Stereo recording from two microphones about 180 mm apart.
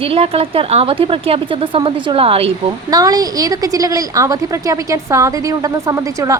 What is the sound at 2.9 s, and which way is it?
A woman's voice, 20° right (ahead or behind).